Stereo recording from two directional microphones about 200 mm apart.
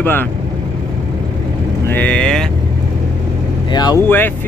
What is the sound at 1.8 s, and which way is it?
Speech, 10° left (ahead or behind).